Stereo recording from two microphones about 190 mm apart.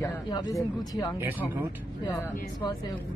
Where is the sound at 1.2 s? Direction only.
10° right (ahead or behind).